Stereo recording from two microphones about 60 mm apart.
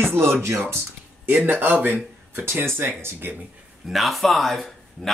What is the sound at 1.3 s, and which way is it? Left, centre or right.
Speech, right.